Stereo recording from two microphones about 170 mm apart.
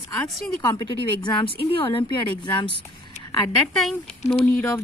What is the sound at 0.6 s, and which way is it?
Speech, 25° left (ahead or behind).